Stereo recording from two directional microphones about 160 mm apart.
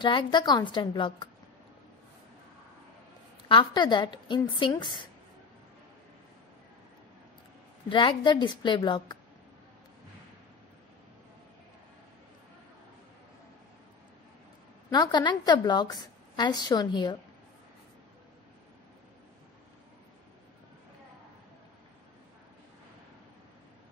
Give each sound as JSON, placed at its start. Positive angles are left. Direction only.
{"t": 0.0, "sound": "a woman's voice", "side_deg": 30}
{"t": 3.4, "sound": "a woman's voice", "side_deg": 30}
{"t": 7.9, "sound": "a woman's voice", "side_deg": 30}
{"t": 14.9, "sound": "a woman's voice", "side_deg": 25}